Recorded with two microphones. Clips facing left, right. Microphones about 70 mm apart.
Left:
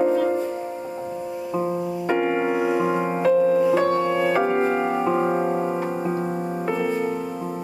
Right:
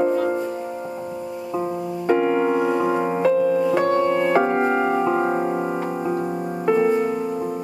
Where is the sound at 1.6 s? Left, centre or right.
Centre.